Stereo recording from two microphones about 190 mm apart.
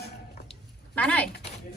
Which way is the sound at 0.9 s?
5° left (ahead or behind).